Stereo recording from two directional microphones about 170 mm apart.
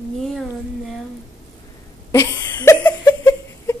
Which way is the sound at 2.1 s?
20° left (ahead or behind).